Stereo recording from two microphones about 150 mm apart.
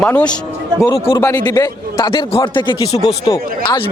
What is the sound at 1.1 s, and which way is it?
A man's voice, 20° left (ahead or behind).